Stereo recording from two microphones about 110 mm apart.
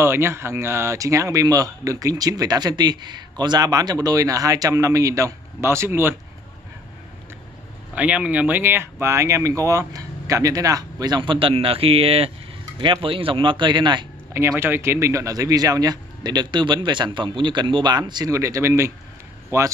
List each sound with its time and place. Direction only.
0.0 s speech: 25° right (ahead or behind)
7.9 s speech: 10° right (ahead or behind); by 12.3 s 60° right (ahead or behind)
12.7 s speech: 50° right (ahead or behind)
14.6 s speech: 20° right (ahead or behind)